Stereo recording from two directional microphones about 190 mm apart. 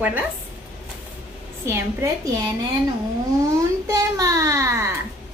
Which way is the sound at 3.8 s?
20° right (ahead or behind).